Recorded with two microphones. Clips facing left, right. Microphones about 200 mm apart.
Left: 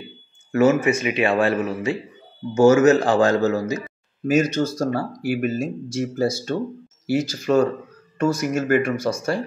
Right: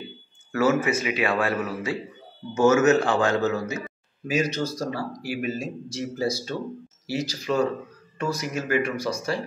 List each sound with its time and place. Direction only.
0.5 s speech: 25° left (ahead or behind)
4.3 s speech: 50° left (ahead or behind)